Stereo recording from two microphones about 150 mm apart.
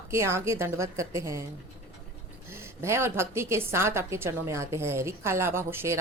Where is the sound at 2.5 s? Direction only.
15° right (ahead or behind).